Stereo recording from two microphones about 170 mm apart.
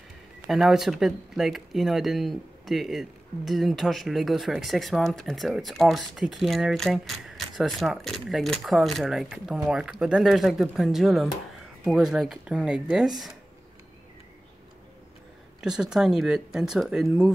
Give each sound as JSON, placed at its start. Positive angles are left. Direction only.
{"t": 0.5, "sound": "speech", "side_deg": 0}
{"t": 15.6, "sound": "speech", "side_deg": -5}